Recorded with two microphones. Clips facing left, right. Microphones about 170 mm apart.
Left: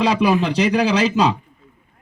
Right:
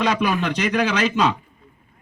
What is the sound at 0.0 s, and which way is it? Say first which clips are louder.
A man's voice: left 4 dB; 30° left (ahead or behind).